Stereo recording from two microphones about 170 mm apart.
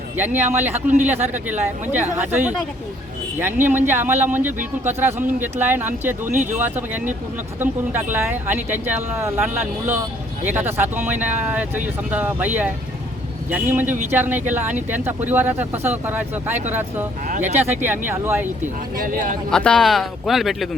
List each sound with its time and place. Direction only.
0.2 s speech: 10° right (ahead or behind)
8.1 s speech: 10° right (ahead or behind)
18.9 s speech: 55° right (ahead or behind)
19.5 s speech: 5° left (ahead or behind)